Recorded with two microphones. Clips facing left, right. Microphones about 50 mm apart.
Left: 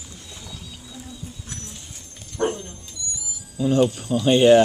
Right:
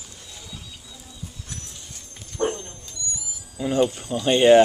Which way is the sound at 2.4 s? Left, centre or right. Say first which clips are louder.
Left 1 dB; centre.